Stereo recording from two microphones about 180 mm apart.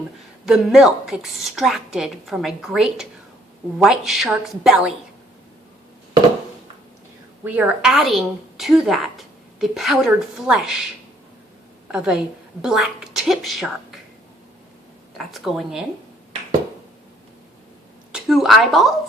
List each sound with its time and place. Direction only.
0.4 s a woman's voice: centre (ahead or behind)
7.4 s a woman's voice: 10° right (ahead or behind)
11.9 s a woman's voice: 5° right (ahead or behind)
15.2 s a woman's voice: centre (ahead or behind)
18.1 s speech: centre (ahead or behind)